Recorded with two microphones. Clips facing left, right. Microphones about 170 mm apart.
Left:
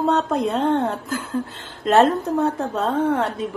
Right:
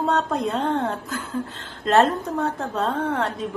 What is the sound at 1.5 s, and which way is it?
Speech, 70° right (ahead or behind).